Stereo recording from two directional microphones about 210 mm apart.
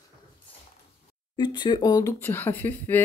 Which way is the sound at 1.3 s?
20° left (ahead or behind).